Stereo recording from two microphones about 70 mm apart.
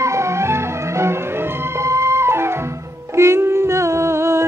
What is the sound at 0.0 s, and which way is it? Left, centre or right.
Music, right.